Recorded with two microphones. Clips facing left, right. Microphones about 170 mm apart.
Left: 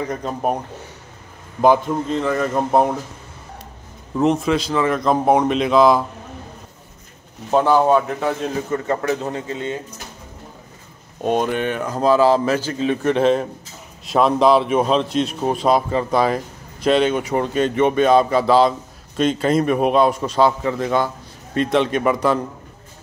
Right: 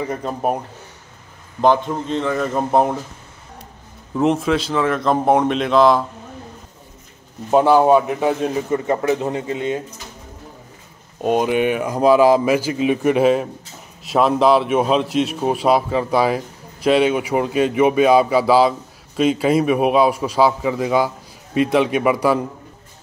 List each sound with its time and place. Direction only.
0.0 s speech: 5° right (ahead or behind)
1.6 s speech: 5° left (ahead or behind)
4.2 s speech: centre (ahead or behind)
7.5 s a man's voice: 10° right (ahead or behind)
11.2 s a man's voice: 5° right (ahead or behind)